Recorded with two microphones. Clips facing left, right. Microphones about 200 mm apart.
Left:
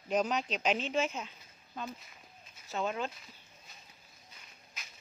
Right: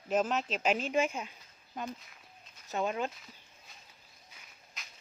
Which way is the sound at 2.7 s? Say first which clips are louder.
Right 2 dB; 15° right (ahead or behind).